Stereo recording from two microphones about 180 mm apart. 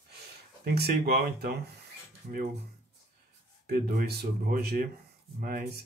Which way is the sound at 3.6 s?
60° right (ahead or behind).